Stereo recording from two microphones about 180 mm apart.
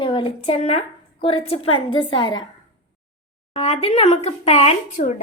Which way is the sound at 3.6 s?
35° left (ahead or behind).